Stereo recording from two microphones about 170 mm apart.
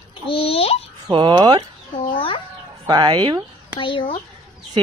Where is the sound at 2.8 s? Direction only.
25° right (ahead or behind).